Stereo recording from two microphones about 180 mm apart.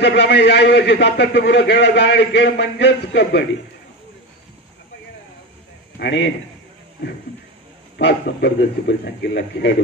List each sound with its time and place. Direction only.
0.0 s a man's voice: 70° left (ahead or behind)
5.9 s a man's voice: 70° left (ahead or behind)
8.0 s a man's voice: 70° left (ahead or behind)